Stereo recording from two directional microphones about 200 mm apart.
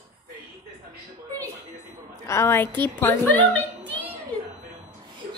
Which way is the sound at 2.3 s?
15° left (ahead or behind).